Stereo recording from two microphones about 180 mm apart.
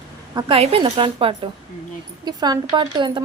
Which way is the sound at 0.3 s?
30° right (ahead or behind).